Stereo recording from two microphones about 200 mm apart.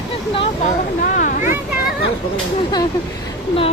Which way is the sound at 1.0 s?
45° left (ahead or behind).